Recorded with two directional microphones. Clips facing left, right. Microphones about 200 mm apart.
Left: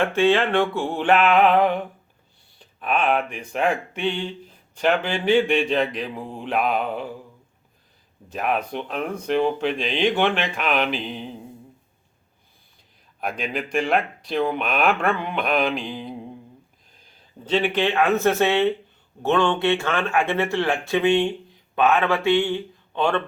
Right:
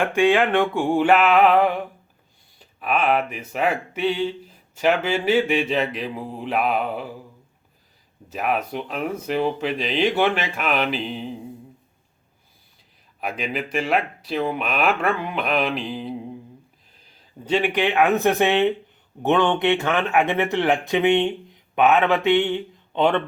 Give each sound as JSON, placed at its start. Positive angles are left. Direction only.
{"t": 0.0, "sound": "a sound", "side_deg": -15}
{"t": 2.6, "sound": "speech", "side_deg": -5}
{"t": 8.3, "sound": "speech", "side_deg": -5}
{"t": 13.1, "sound": "speech", "side_deg": -5}
{"t": 17.4, "sound": "a sound", "side_deg": -10}
{"t": 19.2, "sound": "speech", "side_deg": -15}